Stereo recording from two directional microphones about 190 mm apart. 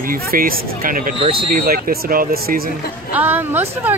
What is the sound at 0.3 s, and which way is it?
Speech, 50° right (ahead or behind).